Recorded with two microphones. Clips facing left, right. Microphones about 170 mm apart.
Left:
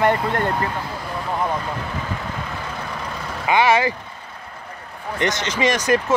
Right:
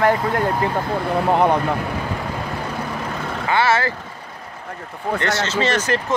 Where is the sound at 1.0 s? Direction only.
65° right (ahead or behind).